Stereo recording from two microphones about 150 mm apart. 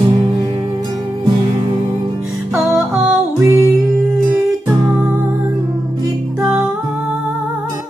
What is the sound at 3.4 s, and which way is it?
Music, 20° right (ahead or behind).